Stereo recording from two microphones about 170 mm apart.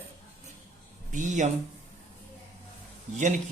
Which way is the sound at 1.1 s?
45° right (ahead or behind).